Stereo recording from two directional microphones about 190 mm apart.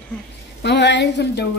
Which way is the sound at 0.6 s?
65° left (ahead or behind).